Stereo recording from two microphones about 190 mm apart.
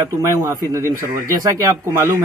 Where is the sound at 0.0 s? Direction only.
15° right (ahead or behind).